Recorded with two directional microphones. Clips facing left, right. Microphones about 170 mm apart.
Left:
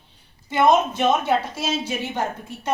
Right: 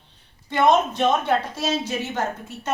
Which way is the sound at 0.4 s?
5° left (ahead or behind).